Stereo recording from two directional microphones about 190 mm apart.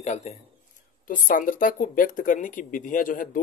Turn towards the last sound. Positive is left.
turn(degrees=45)  # may be behind; listen again after turning